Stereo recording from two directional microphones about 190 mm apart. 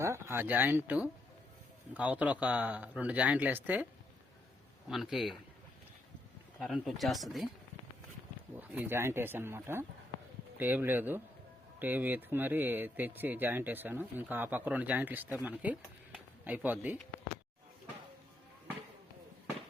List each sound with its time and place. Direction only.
0.0 s speech: 15° right (ahead or behind)
4.9 s speech: centre (ahead or behind)
6.6 s speech: centre (ahead or behind)
8.5 s speech: 10° right (ahead or behind)